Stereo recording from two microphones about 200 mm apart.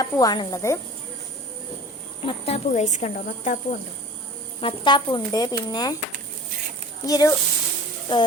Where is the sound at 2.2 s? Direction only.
30° left (ahead or behind).